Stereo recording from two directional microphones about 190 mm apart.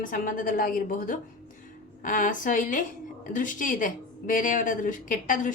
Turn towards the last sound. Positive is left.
turn(degrees=45)  # may be behind; listen again after turning